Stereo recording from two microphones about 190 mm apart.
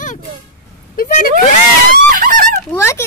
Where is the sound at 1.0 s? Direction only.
50° left (ahead or behind).